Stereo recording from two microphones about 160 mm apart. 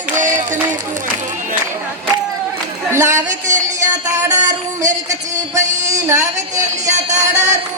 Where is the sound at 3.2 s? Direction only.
50° right (ahead or behind).